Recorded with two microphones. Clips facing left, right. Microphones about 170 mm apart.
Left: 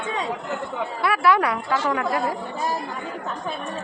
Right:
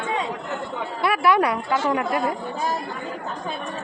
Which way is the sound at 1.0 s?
20° right (ahead or behind).